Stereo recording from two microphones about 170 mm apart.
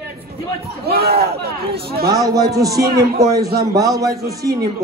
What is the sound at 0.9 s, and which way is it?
Speech, 65° right (ahead or behind).